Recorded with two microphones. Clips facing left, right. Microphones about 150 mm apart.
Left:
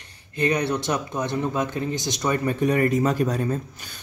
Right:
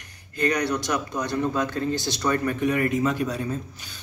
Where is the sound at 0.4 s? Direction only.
25° left (ahead or behind).